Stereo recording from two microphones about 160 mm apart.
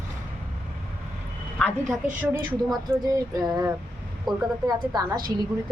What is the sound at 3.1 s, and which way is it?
A woman's voice, 25° right (ahead or behind).